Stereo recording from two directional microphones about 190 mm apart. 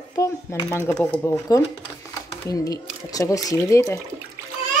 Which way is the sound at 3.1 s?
20° left (ahead or behind).